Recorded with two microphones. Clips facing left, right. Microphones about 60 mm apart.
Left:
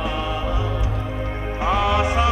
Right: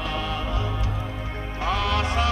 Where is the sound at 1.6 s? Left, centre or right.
Centre.